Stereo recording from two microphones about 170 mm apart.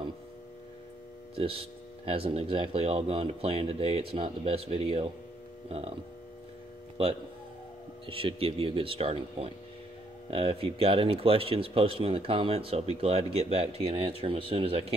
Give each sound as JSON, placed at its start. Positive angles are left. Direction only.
{"t": 1.3, "sound": "speech", "side_deg": -35}
{"t": 8.1, "sound": "speech", "side_deg": -35}